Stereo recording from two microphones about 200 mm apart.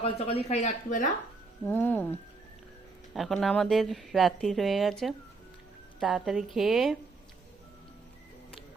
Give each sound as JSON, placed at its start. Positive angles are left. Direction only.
{"t": 0.0, "sound": "a woman's voice", "side_deg": 30}
{"t": 1.6, "sound": "speech", "side_deg": 10}
{"t": 3.2, "sound": "speech", "side_deg": 0}